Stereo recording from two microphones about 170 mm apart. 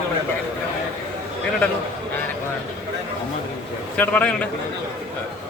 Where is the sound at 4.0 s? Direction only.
10° left (ahead or behind).